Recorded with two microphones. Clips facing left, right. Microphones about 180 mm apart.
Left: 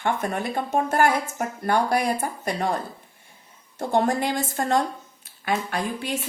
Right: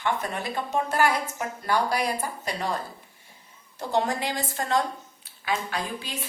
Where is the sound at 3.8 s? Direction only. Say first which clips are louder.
Left 4 dB; 50° left (ahead or behind).